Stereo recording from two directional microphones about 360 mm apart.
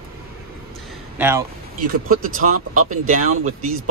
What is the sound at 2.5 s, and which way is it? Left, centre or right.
Speech, right.